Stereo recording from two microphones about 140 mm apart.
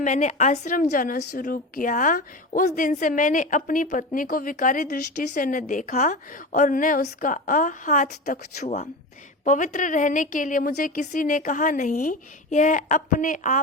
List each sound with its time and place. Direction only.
0.0 s a woman's voice: 60° left (ahead or behind)
9.4 s a woman's voice: 65° left (ahead or behind)